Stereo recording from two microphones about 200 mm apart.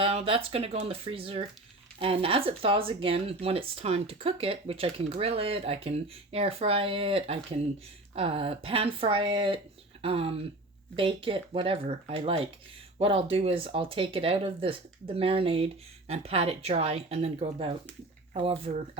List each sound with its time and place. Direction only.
0.0 s speech: 30° right (ahead or behind)